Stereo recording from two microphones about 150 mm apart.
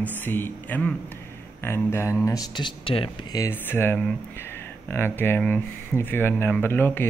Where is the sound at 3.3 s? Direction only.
15° left (ahead or behind).